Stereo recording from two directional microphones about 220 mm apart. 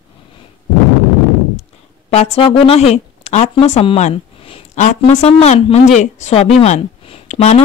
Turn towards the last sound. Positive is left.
turn(degrees=30)  # may be behind; listen again after turning